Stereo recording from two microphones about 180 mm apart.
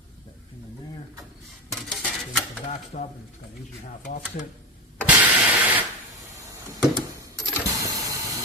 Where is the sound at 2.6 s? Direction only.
40° left (ahead or behind).